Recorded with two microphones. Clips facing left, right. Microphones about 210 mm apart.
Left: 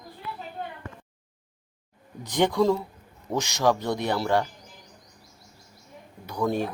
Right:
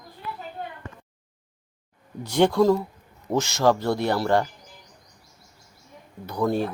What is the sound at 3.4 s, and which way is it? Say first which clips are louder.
Speech: right 3 dB; 15° left (ahead or behind).